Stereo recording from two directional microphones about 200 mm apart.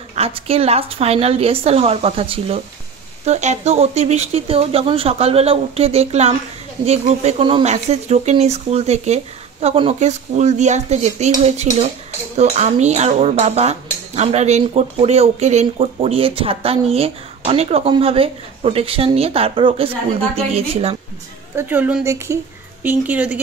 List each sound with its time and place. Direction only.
0.1 s speech: 30° right (ahead or behind)
21.5 s speech: 10° right (ahead or behind)